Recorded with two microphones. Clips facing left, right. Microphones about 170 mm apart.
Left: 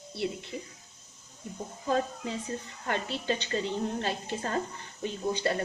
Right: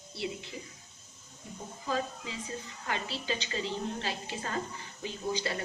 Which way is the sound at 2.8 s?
50° left (ahead or behind).